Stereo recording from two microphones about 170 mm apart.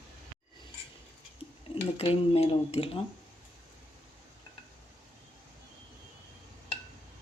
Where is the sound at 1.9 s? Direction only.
35° left (ahead or behind).